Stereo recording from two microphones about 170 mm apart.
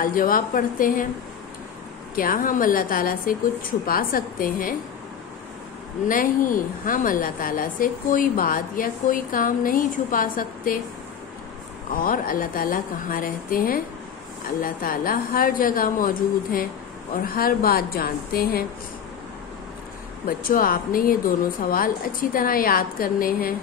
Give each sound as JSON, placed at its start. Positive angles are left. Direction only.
{"t": 0.0, "sound": "a woman's voice", "side_deg": 55}
{"t": 2.1, "sound": "a woman's voice", "side_deg": 55}
{"t": 6.0, "sound": "a woman's voice", "side_deg": 55}
{"t": 11.9, "sound": "a woman's voice", "side_deg": 55}
{"t": 20.2, "sound": "a woman's voice", "side_deg": 55}